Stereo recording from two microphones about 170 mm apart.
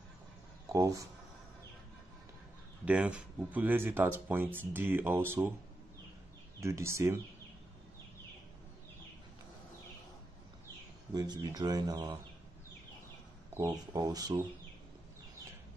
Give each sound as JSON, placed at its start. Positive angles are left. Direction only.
{"t": 0.7, "sound": "speech", "side_deg": -20}
{"t": 2.8, "sound": "speech", "side_deg": -5}
{"t": 6.6, "sound": "speech", "side_deg": -15}
{"t": 11.1, "sound": "speech", "side_deg": -25}
{"t": 13.6, "sound": "speech", "side_deg": -20}